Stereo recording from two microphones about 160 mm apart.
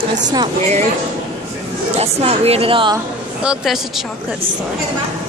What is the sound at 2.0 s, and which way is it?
Speech, 40° right (ahead or behind).